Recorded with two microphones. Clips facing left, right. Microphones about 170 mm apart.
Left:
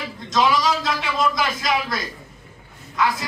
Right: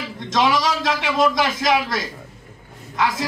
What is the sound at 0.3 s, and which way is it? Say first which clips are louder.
A man's voice: even; 80° right.